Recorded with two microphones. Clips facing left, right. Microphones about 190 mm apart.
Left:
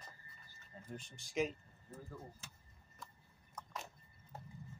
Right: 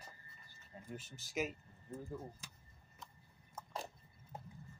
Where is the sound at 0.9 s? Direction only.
5° right (ahead or behind).